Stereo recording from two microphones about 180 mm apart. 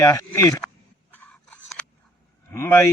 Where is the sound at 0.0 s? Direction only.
15° left (ahead or behind).